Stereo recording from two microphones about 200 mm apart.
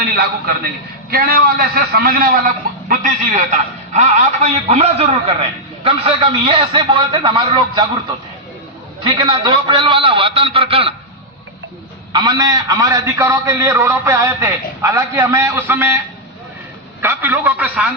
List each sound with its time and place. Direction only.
0.0 s a man's voice: 50° right (ahead or behind)
2.9 s a man's voice: 40° right (ahead or behind); by 7.9 s 25° right (ahead or behind)
9.0 s a man's voice: 25° right (ahead or behind)
12.1 s a man's voice: 20° right (ahead or behind)
17.0 s a man's voice: 10° right (ahead or behind)